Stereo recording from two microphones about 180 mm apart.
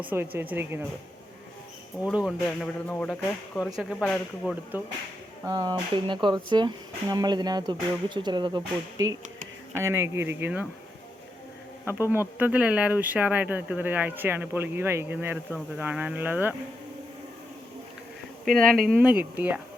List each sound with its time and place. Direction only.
0.1 s speech: 10° right (ahead or behind)
2.1 s speech: centre (ahead or behind)
4.7 s speech: 10° right (ahead or behind)
5.5 s speech: 20° right (ahead or behind)
9.7 s speech: 15° right (ahead or behind)
11.9 s speech: 10° right (ahead or behind)
18.4 s speech: 5° left (ahead or behind)
18.9 s speech: 10° right (ahead or behind)